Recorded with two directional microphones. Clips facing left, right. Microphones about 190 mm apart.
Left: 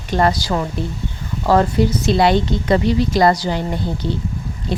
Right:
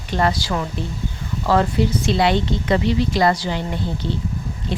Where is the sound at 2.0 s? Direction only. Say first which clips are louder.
Left 4 dB; 40° left (ahead or behind).